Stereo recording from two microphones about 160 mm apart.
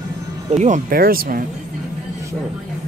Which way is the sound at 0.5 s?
50° right (ahead or behind).